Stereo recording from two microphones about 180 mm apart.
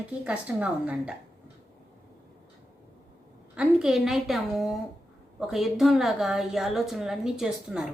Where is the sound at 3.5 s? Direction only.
5° right (ahead or behind).